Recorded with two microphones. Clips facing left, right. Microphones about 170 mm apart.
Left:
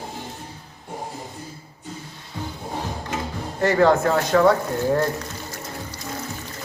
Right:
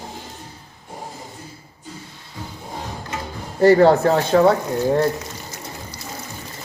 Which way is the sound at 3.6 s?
35° right (ahead or behind).